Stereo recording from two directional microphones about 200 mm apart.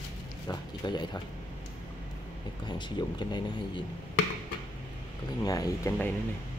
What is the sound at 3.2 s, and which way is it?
Speech, 20° left (ahead or behind).